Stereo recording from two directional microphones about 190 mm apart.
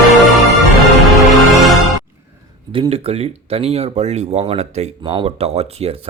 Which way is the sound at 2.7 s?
30° right (ahead or behind).